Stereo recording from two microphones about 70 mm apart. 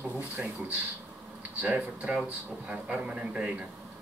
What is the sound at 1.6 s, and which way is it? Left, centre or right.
A man's voice, right.